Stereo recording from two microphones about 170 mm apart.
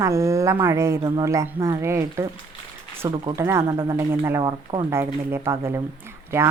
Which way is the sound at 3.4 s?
15° right (ahead or behind).